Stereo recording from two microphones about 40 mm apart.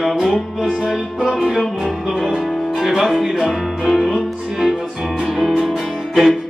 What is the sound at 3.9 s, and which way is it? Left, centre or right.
Music, centre.